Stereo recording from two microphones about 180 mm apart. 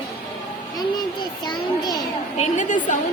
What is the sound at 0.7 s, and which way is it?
A child's voice, 25° left (ahead or behind).